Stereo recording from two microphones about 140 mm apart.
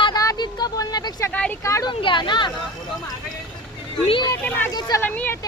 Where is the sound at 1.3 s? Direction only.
10° left (ahead or behind).